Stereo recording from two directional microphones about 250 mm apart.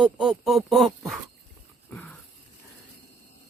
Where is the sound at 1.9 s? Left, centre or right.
Centre.